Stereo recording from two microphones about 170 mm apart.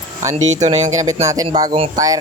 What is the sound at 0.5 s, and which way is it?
Speech, 45° right (ahead or behind).